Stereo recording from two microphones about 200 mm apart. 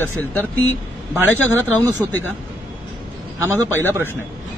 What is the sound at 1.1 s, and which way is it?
Speech, 10° right (ahead or behind).